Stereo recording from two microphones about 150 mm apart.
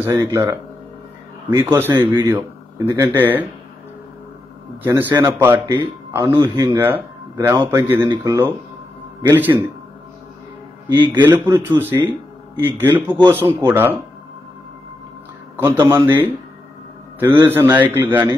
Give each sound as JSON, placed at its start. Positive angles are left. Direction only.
{"t": 0.0, "sound": "speech", "side_deg": -20}
{"t": 2.0, "sound": "speech", "side_deg": -30}
{"t": 2.3, "sound": "speech", "side_deg": -15}
{"t": 4.8, "sound": "speech", "side_deg": -15}
{"t": 10.9, "sound": "speech", "side_deg": -10}
{"t": 15.5, "sound": "speech", "side_deg": -15}